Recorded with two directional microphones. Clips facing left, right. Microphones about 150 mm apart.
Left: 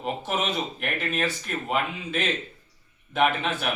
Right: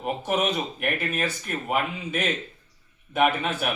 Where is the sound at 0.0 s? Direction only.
10° right (ahead or behind).